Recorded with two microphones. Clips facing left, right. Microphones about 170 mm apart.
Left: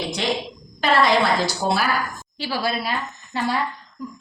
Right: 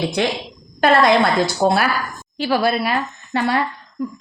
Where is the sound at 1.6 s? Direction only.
60° right (ahead or behind).